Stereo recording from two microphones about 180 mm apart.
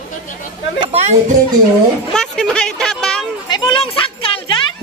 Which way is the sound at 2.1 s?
5° left (ahead or behind).